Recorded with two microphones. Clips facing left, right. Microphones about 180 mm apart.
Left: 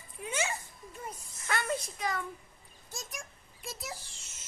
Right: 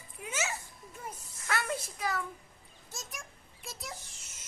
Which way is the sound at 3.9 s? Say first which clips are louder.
Left 1 dB; 30° left (ahead or behind).